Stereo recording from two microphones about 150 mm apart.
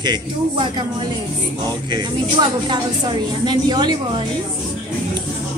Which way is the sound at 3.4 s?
30° right (ahead or behind).